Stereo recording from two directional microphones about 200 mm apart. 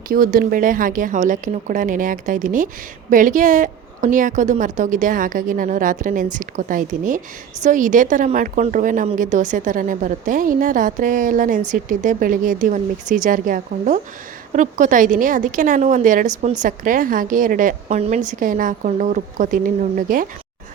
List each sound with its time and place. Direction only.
0.1 s a woman's voice: 45° right (ahead or behind)